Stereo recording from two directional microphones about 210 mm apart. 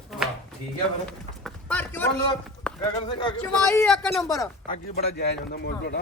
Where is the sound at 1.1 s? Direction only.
5° left (ahead or behind).